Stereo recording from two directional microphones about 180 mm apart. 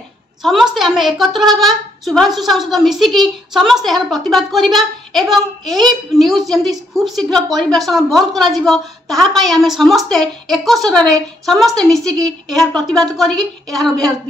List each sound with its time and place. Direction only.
0.4 s a child's voice: centre (ahead or behind)